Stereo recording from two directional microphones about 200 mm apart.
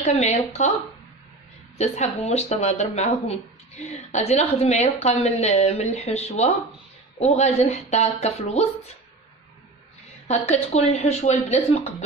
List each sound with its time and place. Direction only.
0.0 s speech: 35° left (ahead or behind)
1.8 s speech: 35° left (ahead or behind)
10.2 s speech: 35° left (ahead or behind)